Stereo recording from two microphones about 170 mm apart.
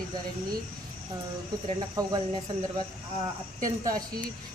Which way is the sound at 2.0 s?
25° right (ahead or behind).